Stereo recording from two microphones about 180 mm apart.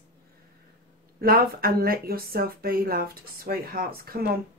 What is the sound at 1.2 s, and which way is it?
Speech, 55° right (ahead or behind).